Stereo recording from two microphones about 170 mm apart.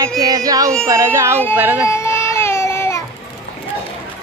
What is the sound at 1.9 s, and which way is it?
Baby cry, 15° left (ahead or behind).